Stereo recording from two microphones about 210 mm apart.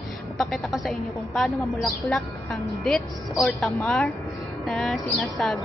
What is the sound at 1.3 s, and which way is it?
Speech, centre (ahead or behind).